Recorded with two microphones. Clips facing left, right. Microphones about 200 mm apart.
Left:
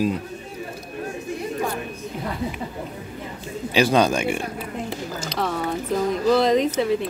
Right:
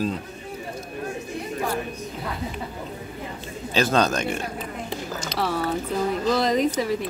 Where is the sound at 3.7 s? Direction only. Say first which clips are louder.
Left 3 dB; 15° left (ahead or behind).